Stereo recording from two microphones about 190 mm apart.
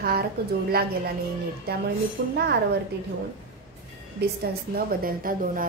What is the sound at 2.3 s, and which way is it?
Speech, 55° right (ahead or behind).